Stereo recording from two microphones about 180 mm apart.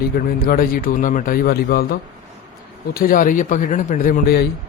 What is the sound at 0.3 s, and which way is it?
A man's voice, 55° left (ahead or behind).